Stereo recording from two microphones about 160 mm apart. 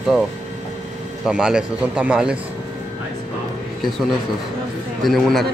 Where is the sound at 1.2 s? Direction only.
5° right (ahead or behind).